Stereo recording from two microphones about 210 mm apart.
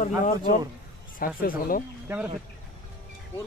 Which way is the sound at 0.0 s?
35° left (ahead or behind).